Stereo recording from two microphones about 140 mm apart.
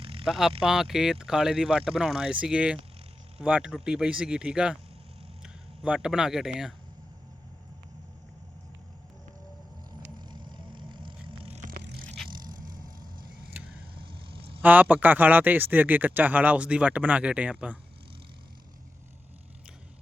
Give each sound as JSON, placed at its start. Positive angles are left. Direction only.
{"t": 0.0, "sound": "a sound", "side_deg": -40}
{"t": 0.3, "sound": "speech", "side_deg": 0}
{"t": 10.2, "sound": "vehicle", "side_deg": -30}
{"t": 13.9, "sound": "vehicle", "side_deg": -40}
{"t": 14.6, "sound": "speech", "side_deg": -10}